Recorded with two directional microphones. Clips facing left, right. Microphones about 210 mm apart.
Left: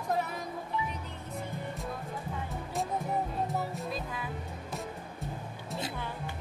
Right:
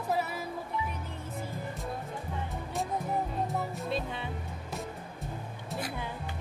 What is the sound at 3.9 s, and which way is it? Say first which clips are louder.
Speech: right 3 dB; 30° right (ahead or behind).